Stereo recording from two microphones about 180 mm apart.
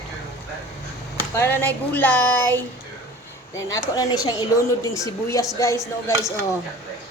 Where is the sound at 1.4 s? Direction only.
10° left (ahead or behind).